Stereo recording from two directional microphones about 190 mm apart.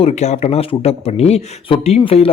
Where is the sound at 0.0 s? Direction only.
35° left (ahead or behind).